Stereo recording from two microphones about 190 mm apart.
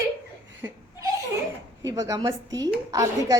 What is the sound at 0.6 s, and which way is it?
Laughter, 15° right (ahead or behind).